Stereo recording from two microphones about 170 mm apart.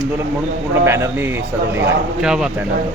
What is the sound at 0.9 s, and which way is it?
Speech, 15° right (ahead or behind).